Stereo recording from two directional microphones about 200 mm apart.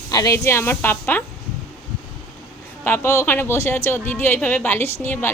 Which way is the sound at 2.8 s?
10° left (ahead or behind).